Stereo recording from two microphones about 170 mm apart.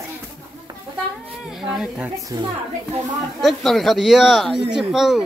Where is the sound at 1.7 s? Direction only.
5° right (ahead or behind).